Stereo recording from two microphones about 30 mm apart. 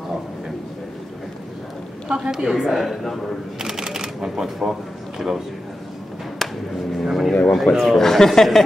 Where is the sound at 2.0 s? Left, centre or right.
Right.